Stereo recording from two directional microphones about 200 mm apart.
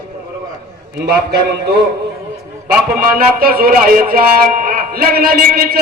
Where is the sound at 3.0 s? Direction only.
45° right (ahead or behind).